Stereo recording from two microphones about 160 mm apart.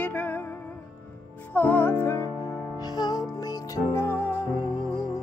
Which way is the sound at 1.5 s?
10° left (ahead or behind).